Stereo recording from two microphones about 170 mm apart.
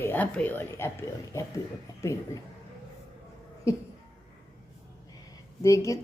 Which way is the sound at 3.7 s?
15° left (ahead or behind).